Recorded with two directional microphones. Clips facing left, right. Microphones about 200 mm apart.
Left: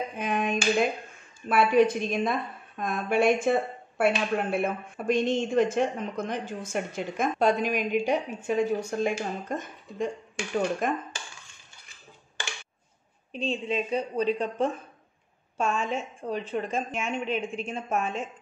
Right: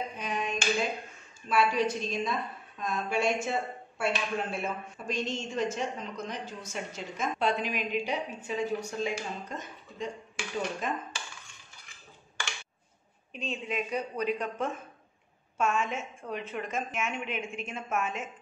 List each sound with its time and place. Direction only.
0.2 s clapping: 55° left (ahead or behind)
1.5 s a woman's voice: 55° left (ahead or behind)
13.3 s a woman's voice: 30° left (ahead or behind)